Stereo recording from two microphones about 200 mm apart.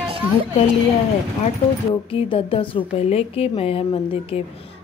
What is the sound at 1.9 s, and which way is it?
Speech, 25° left (ahead or behind).